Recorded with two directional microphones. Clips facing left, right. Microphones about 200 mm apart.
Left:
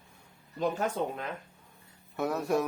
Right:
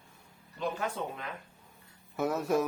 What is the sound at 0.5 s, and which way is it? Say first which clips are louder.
Speech: left 4 dB; 45° left (ahead or behind).